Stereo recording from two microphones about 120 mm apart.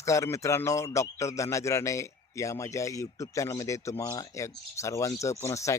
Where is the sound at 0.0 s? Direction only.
25° left (ahead or behind).